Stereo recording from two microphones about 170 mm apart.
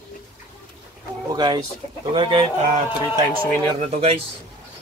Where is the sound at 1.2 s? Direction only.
25° right (ahead or behind).